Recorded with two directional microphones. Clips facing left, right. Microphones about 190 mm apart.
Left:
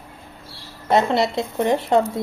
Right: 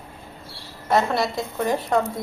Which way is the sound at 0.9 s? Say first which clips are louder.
Left 3 dB; 20° left (ahead or behind).